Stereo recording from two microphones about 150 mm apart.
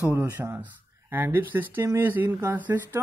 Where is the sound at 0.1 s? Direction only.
15° right (ahead or behind).